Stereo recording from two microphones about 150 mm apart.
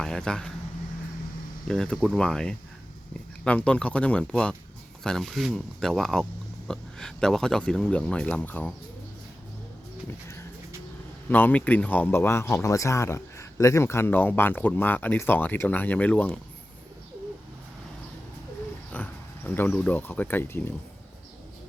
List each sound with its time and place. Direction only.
0.0 s speech: 5° left (ahead or behind)
1.6 s speech: 5° left (ahead or behind)
11.3 s speech: 10° left (ahead or behind)
18.9 s speech: 10° left (ahead or behind)